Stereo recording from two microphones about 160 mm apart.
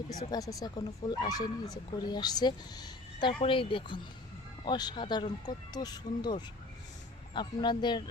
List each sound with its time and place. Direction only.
0.1 s speech: 25° left (ahead or behind)